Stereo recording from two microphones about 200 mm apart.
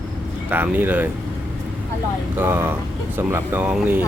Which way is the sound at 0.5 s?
10° right (ahead or behind).